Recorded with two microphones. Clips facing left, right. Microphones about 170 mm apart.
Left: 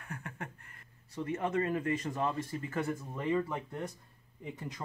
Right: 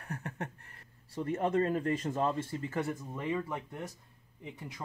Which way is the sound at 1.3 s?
35° right (ahead or behind).